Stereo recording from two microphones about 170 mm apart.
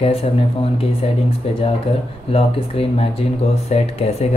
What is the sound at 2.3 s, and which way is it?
Speech, 35° left (ahead or behind).